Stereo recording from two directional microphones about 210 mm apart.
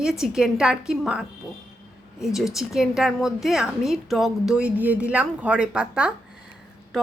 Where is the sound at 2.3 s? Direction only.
Centre (ahead or behind).